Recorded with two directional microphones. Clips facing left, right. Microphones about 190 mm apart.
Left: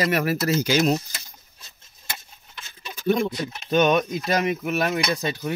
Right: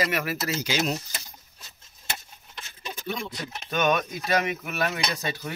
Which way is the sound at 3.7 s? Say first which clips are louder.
Left 5 dB; 25° left (ahead or behind).